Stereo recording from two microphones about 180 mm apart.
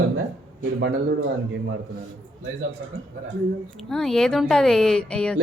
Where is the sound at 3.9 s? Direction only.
5° left (ahead or behind).